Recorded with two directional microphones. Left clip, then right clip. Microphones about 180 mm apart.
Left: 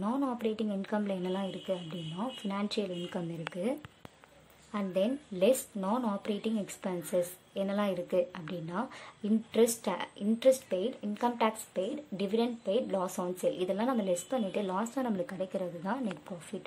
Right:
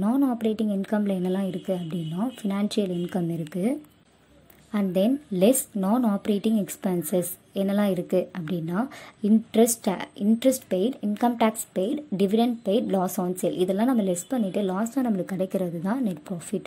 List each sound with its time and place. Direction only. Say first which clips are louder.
0.0 s a woman's voice: right 8 dB; 15° right (ahead or behind)
4.7 s a woman's voice: right 7 dB; 20° right (ahead or behind)